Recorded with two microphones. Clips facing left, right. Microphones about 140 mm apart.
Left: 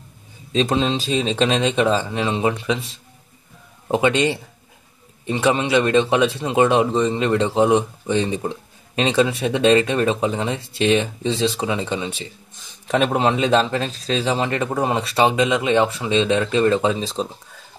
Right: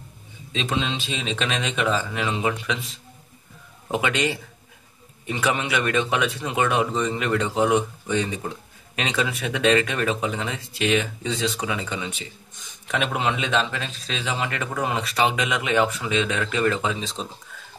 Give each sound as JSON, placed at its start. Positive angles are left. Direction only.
{"t": 0.5, "sound": "speech", "side_deg": 35}